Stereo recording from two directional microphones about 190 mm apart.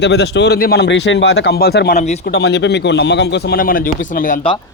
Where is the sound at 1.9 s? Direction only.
35° left (ahead or behind).